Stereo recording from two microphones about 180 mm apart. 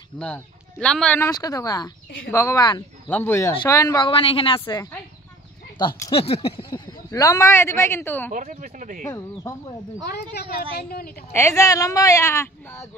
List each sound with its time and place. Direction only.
0.2 s a woman's voice: 5° left (ahead or behind); by 2.8 s 20° left (ahead or behind)
3.1 s a woman's voice: 10° left (ahead or behind)
6.1 s a sound: 30° left (ahead or behind)
7.1 s speech: 20° left (ahead or behind)
8.3 s speech: 45° right (ahead or behind)
9.0 s a woman's voice: 20° left (ahead or behind)
10.0 s a woman's voice: 65° left (ahead or behind)
11.3 s speech: 15° left (ahead or behind)